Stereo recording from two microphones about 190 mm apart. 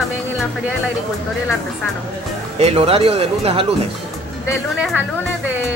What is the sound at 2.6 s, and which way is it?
Speech, 30° right (ahead or behind).